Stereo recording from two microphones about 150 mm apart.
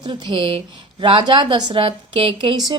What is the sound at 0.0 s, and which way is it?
Speech, 30° right (ahead or behind).